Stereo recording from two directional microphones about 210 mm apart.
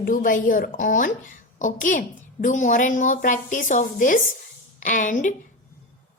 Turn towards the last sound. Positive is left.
turn(degrees=35)  # may be behind; listen again after turning